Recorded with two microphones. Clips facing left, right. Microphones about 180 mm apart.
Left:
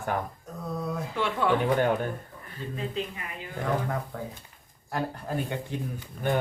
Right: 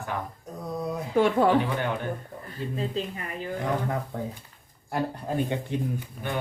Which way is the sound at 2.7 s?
35° right (ahead or behind).